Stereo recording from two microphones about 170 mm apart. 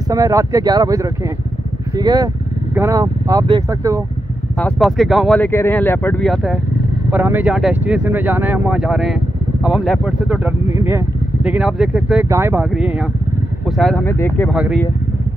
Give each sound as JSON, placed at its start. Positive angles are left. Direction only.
{"t": 0.1, "sound": "speech", "side_deg": -20}
{"t": 4.6, "sound": "speech", "side_deg": 5}
{"t": 12.3, "sound": "speech", "side_deg": -15}
{"t": 14.0, "sound": "speech", "side_deg": 15}
{"t": 14.5, "sound": "speech", "side_deg": -5}